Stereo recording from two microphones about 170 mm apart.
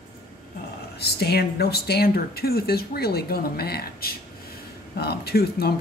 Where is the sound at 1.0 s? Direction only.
70° left (ahead or behind).